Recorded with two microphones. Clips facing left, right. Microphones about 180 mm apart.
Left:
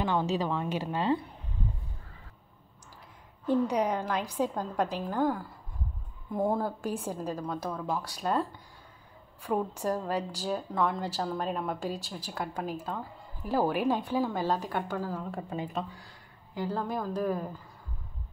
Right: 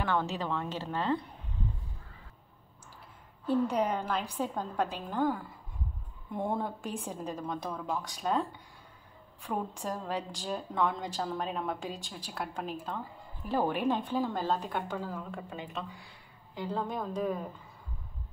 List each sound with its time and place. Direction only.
0.0 s a woman's voice: 15° left (ahead or behind)
3.4 s a woman's voice: 15° left (ahead or behind)
6.3 s a woman's voice: centre (ahead or behind)
9.5 s a woman's voice: 10° left (ahead or behind)
15.3 s speech: 35° left (ahead or behind)
16.5 s a woman's voice: centre (ahead or behind)